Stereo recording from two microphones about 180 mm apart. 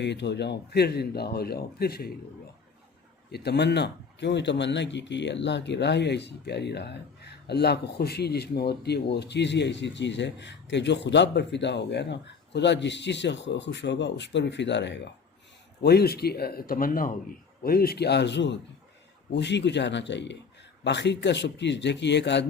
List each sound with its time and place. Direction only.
0.0 s speech: 75° left (ahead or behind)
3.3 s speech: 65° left (ahead or behind)
15.8 s speech: 60° left (ahead or behind)